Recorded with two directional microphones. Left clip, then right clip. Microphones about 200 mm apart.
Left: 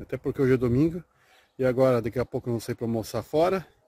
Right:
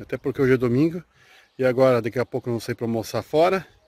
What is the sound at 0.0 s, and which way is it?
Speech, 5° left (ahead or behind).